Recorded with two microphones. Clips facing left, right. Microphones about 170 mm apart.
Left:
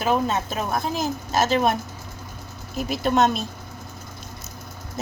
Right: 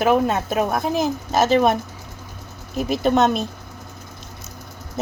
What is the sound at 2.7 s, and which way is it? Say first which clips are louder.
Speech: right 3 dB; 50° right (ahead or behind).